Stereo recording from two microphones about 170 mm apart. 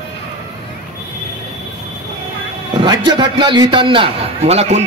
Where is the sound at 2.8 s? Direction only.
25° right (ahead or behind).